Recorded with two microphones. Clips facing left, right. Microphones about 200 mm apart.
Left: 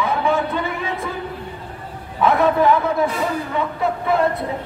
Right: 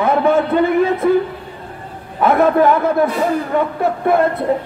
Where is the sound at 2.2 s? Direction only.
55° right (ahead or behind).